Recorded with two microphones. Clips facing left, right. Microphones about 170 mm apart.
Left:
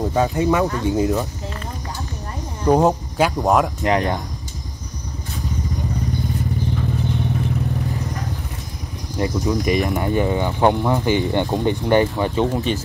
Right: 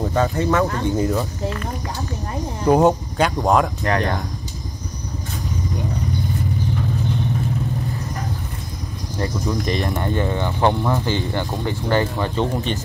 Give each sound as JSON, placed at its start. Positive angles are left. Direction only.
{"t": 0.1, "sound": "speech", "side_deg": 10}
{"t": 2.7, "sound": "speech", "side_deg": 0}
{"t": 3.8, "sound": "speech", "side_deg": 20}
{"t": 9.2, "sound": "speech", "side_deg": 10}
{"t": 12.7, "sound": "speech", "side_deg": 5}